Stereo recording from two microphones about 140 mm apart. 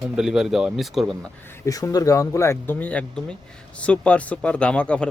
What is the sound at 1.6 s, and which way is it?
Speech, 25° left (ahead or behind).